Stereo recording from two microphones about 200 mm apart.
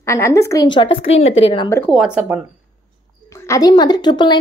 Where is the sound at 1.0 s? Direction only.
75° left (ahead or behind).